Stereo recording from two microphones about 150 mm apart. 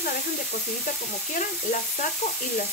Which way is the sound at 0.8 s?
65° left (ahead or behind).